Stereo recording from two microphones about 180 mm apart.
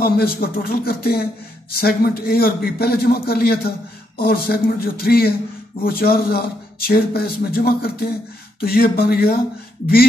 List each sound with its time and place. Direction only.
0.0 s speech: 55° left (ahead or behind)